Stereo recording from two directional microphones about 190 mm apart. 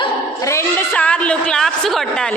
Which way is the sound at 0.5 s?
10° left (ahead or behind).